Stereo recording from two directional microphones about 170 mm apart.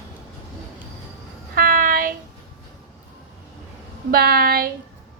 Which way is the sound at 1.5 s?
60° right (ahead or behind).